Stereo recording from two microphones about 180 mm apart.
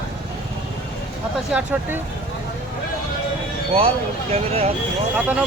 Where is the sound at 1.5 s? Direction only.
5° right (ahead or behind).